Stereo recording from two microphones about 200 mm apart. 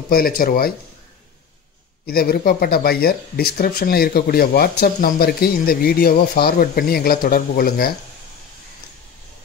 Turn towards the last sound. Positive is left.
turn(degrees=45)  # may be behind; listen again after turning